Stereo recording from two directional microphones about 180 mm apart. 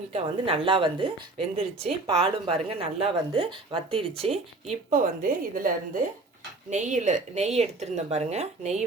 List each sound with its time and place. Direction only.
0.1 s a woman's voice: 30° right (ahead or behind)